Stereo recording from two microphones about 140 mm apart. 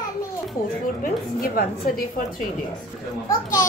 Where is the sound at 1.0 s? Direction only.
90° left.